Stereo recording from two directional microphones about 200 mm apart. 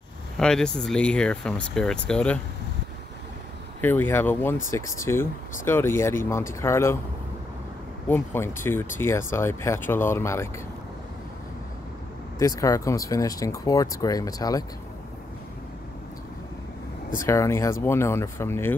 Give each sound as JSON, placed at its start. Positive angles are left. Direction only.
{"t": 0.4, "sound": "speech", "side_deg": 5}
{"t": 3.8, "sound": "speech", "side_deg": 10}
{"t": 8.1, "sound": "speech", "side_deg": 10}
{"t": 12.4, "sound": "speech", "side_deg": 15}
{"t": 17.3, "sound": "speech", "side_deg": 15}